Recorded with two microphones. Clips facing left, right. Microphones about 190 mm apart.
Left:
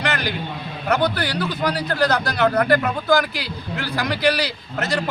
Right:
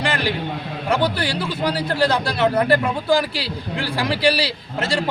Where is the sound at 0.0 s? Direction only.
30° right (ahead or behind).